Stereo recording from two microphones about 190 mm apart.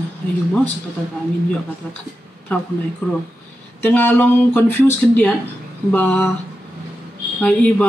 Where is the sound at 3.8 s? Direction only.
10° left (ahead or behind).